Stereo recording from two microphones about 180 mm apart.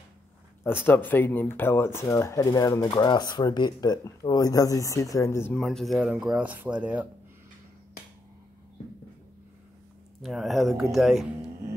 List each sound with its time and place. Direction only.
0.7 s speech: 10° left (ahead or behind)
5.6 s speech: centre (ahead or behind)
10.2 s speech: centre (ahead or behind)